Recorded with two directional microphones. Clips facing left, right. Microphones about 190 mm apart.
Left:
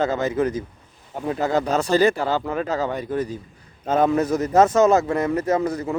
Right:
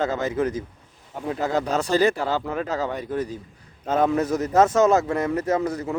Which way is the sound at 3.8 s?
25° left (ahead or behind).